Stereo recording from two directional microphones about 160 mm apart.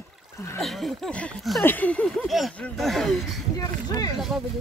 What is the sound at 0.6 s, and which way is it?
Speech, centre (ahead or behind).